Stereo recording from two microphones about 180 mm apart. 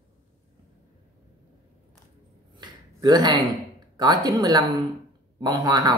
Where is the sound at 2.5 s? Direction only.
25° right (ahead or behind).